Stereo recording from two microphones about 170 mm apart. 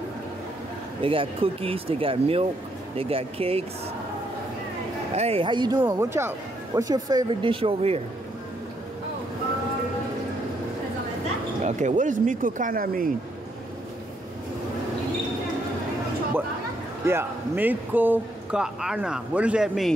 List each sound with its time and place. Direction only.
1.0 s speech: 35° right (ahead or behind)
5.1 s speech: 35° right (ahead or behind)
11.6 s speech: 45° right (ahead or behind)
17.0 s a man's voice: 15° right (ahead or behind)